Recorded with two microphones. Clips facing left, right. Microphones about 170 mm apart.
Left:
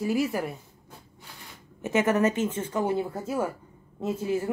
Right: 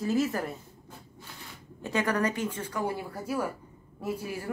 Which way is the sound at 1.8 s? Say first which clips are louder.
Left 5 dB; 20° left (ahead or behind).